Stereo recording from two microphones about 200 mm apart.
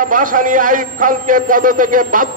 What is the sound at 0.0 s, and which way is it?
A man's voice, 40° right (ahead or behind).